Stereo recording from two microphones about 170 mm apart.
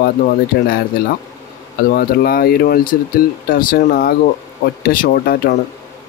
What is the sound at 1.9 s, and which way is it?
Speech, 65° left (ahead or behind).